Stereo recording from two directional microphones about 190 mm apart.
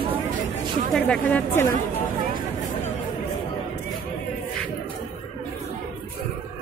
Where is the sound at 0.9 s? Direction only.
5° left (ahead or behind).